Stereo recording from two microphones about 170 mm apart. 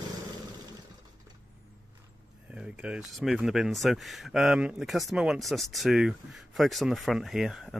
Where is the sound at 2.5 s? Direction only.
5° right (ahead or behind).